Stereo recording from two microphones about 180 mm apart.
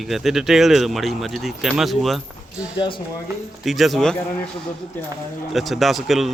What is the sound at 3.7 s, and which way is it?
Speech, centre (ahead or behind).